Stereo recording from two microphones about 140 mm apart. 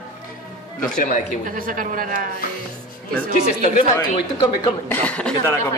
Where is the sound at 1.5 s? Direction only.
75° right (ahead or behind).